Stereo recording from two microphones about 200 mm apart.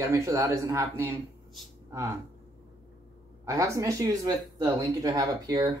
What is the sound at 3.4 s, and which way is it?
Speech, 15° right (ahead or behind).